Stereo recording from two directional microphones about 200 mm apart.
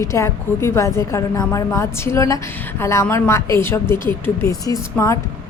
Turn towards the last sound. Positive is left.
turn(degrees=15)  # may be behind; listen again after turning